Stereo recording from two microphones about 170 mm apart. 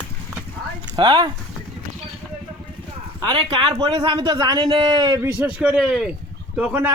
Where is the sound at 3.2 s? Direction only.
30° right (ahead or behind).